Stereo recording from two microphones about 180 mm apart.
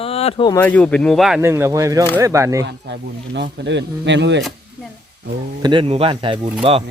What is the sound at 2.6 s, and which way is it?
Speech, 75° right (ahead or behind).